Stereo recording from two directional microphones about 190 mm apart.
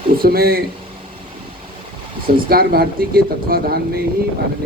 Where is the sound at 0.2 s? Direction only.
55° right (ahead or behind).